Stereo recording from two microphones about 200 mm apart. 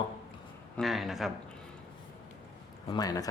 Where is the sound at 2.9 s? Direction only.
20° left (ahead or behind).